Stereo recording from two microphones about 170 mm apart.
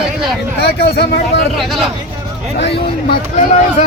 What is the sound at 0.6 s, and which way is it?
Speech, 70° left (ahead or behind).